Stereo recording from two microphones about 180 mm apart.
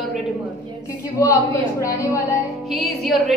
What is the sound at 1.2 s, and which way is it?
Speech, 20° left (ahead or behind).